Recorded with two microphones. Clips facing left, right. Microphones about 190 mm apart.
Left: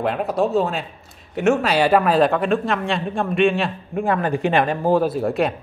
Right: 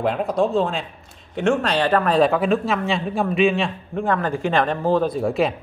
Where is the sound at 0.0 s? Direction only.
Centre (ahead or behind).